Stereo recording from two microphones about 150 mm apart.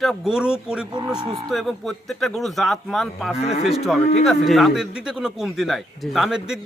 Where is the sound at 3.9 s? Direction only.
Centre (ahead or behind).